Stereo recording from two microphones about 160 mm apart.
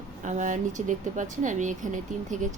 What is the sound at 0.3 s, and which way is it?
Speech, 50° right (ahead or behind).